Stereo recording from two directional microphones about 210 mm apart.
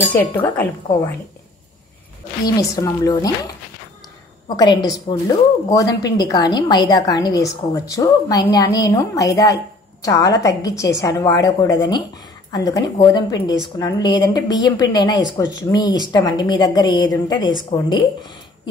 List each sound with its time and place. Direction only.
0.1 s a woman's voice: 10° left (ahead or behind)
2.4 s a woman's voice: 15° left (ahead or behind)
4.6 s a woman's voice: 20° left (ahead or behind)